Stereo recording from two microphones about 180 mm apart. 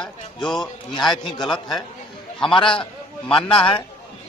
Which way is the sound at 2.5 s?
30° left (ahead or behind).